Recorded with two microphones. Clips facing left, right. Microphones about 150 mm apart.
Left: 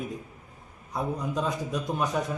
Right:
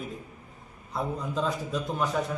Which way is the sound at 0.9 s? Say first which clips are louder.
Left 1 dB; 15° left (ahead or behind).